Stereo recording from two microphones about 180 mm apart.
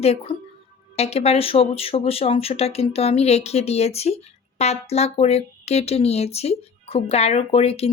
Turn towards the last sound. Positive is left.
turn(degrees=35)  # may be behind; listen again after turning